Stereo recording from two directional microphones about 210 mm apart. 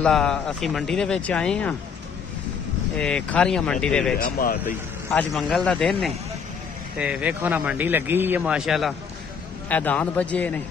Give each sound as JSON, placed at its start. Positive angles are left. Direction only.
{"t": 0.0, "sound": "a man's voice", "side_deg": 5}
{"t": 3.0, "sound": "a man's voice", "side_deg": 5}
{"t": 4.2, "sound": "speech", "side_deg": 45}
{"t": 5.1, "sound": "a man's voice", "side_deg": 5}